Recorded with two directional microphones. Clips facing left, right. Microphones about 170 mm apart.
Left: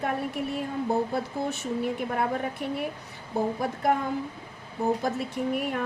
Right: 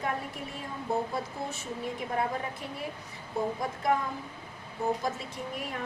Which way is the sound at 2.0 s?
65° left (ahead or behind).